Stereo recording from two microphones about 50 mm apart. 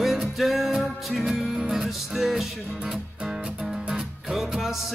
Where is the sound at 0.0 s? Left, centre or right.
Centre.